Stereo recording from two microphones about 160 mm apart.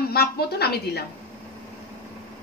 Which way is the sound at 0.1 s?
75° left (ahead or behind).